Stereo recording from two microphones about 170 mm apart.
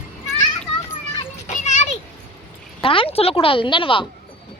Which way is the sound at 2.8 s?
30° left (ahead or behind).